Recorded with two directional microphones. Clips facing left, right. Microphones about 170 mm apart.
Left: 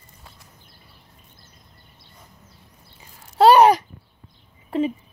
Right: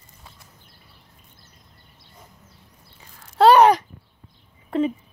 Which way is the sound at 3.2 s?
10° left (ahead or behind).